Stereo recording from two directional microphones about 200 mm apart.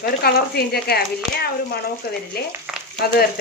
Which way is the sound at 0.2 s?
50° left (ahead or behind).